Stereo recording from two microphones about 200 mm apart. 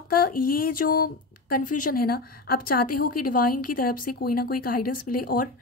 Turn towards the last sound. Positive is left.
turn(degrees=45)  # may be behind; listen again after turning